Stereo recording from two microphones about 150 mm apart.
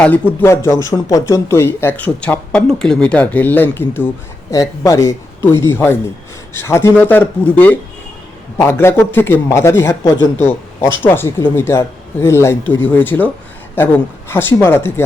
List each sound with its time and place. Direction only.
0.0 s speech: 15° left (ahead or behind)